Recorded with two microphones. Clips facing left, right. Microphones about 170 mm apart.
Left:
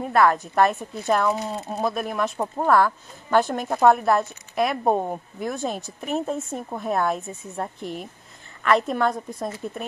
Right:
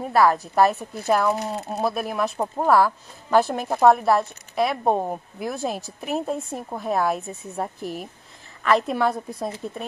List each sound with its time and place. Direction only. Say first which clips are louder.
0.0 s speech: even; 5° right (ahead or behind)